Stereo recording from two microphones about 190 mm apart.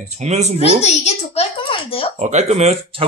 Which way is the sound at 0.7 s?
35° left (ahead or behind).